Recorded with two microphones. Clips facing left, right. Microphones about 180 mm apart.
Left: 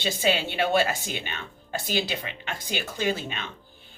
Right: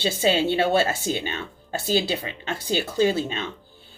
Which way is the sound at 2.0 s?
35° right (ahead or behind).